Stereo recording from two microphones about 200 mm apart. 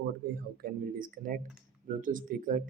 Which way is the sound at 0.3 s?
45° right (ahead or behind).